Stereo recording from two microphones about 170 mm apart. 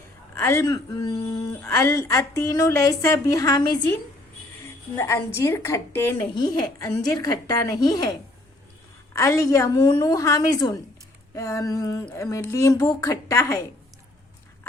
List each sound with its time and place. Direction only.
0.3 s speech: 15° left (ahead or behind)
4.9 s a woman's voice: 15° left (ahead or behind)
9.1 s a woman's voice: 20° left (ahead or behind)